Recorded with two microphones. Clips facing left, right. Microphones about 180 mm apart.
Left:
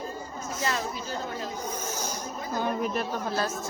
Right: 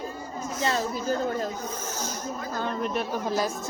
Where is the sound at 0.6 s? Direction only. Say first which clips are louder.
Right 3 dB; 30° right (ahead or behind).